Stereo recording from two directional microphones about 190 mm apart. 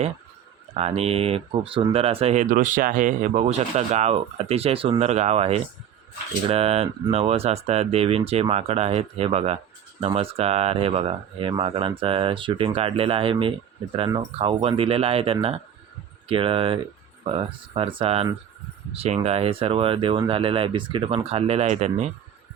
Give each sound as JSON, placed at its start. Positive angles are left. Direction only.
{"t": 0.7, "sound": "speech", "side_deg": -35}